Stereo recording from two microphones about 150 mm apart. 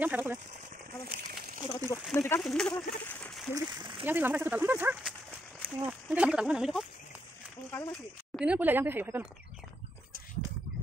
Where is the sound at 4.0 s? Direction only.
15° right (ahead or behind).